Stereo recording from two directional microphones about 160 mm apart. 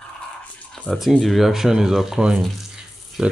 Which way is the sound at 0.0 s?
10° left (ahead or behind).